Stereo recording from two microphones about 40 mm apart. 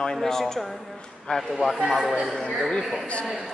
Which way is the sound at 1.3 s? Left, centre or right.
Left.